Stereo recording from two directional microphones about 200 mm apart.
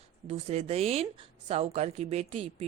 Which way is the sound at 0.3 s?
30° right (ahead or behind).